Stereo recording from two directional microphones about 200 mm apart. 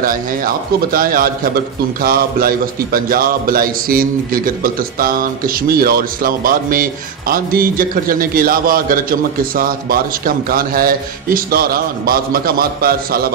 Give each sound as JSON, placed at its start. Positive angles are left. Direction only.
{"t": 0.9, "sound": "a man's voice", "side_deg": -45}